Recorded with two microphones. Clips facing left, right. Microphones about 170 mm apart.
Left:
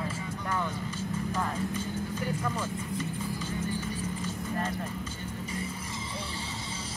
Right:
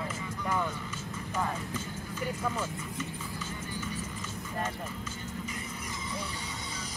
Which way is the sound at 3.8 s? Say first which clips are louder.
Left 4 dB; 30° left (ahead or behind).